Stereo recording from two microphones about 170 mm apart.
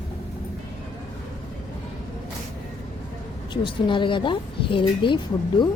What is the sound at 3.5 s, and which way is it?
A woman's voice, 30° left (ahead or behind).